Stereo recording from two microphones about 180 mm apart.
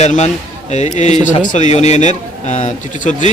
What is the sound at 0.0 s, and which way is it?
A man's voice, 40° left (ahead or behind).